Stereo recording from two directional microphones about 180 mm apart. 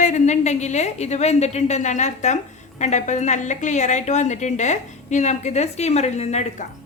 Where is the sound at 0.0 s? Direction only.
40° left (ahead or behind).